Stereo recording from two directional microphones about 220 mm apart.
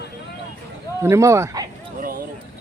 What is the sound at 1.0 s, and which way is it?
Speech, 10° right (ahead or behind).